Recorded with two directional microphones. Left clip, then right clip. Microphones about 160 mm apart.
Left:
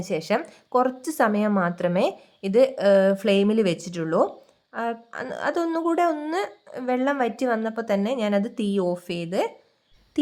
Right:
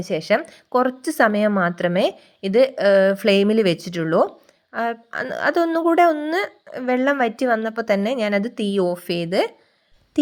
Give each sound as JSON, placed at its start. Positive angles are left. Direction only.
{"t": 0.0, "sound": "a woman's voice", "side_deg": -15}